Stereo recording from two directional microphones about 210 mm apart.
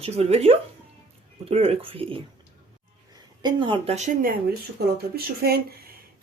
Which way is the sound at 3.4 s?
25° right (ahead or behind).